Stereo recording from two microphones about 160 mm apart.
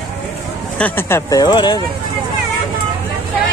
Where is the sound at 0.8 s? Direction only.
15° left (ahead or behind).